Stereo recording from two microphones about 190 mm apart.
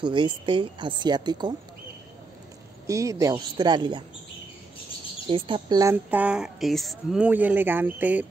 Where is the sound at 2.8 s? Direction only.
15° right (ahead or behind).